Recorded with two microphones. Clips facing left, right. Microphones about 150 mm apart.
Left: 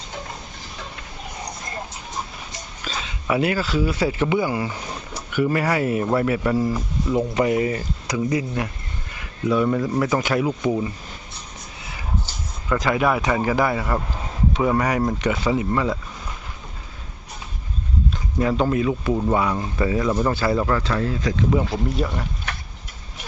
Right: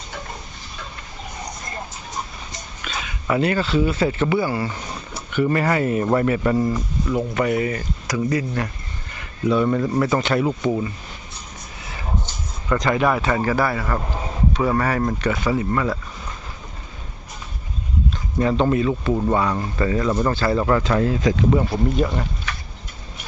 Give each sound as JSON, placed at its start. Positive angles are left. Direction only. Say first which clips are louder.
{"t": 2.8, "sound": "a sound", "louder": "even", "side_deg": 30}
{"t": 3.2, "sound": "speech", "louder": "right 1 dB", "side_deg": 10}
{"t": 7.3, "sound": "speech", "louder": "left 1 dB", "side_deg": 25}
{"t": 7.8, "sound": "speech", "louder": "right 1 dB", "side_deg": 15}
{"t": 12.6, "sound": "speech", "louder": "right 1 dB", "side_deg": 5}
{"t": 18.3, "sound": "speech", "louder": "right 2 dB", "side_deg": 5}
{"t": 20.7, "sound": "speech", "louder": "right 4 dB", "side_deg": -20}
{"t": 21.5, "sound": "speech", "louder": "right 2 dB", "side_deg": 0}
{"t": 22.5, "sound": "a sound", "louder": "even", "side_deg": 60}